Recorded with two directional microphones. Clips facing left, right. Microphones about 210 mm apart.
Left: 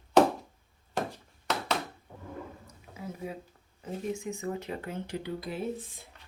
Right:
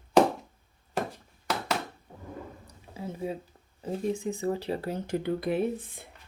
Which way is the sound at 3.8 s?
35° right (ahead or behind).